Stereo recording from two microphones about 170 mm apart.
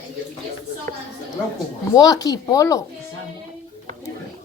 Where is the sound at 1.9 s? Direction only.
20° left (ahead or behind).